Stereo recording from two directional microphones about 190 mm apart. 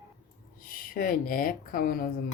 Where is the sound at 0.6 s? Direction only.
45° left (ahead or behind).